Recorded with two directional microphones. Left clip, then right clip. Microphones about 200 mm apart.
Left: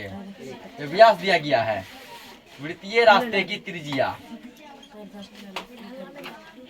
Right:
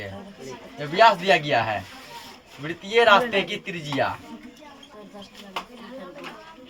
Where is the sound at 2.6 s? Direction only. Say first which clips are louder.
Left 1 dB; 25° right (ahead or behind).